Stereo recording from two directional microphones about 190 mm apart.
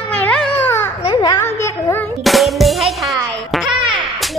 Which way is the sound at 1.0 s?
25° left (ahead or behind).